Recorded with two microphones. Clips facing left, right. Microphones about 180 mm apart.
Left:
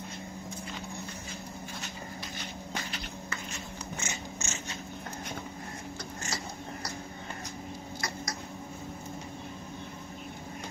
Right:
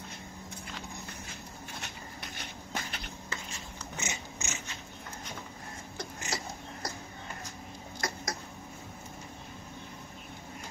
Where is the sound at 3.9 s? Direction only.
15° right (ahead or behind).